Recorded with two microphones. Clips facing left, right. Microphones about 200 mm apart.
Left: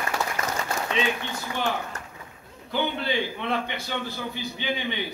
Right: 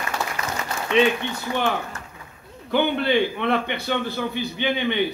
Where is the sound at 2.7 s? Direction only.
65° right (ahead or behind).